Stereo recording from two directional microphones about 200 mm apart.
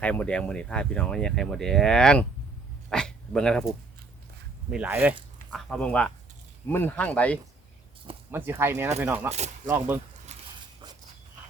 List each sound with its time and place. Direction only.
0.0 s speech: 5° left (ahead or behind)
4.7 s speech: 10° right (ahead or behind)
5.5 s speech: centre (ahead or behind)
8.3 s speech: 10° right (ahead or behind)
10.3 s a sound: 30° right (ahead or behind)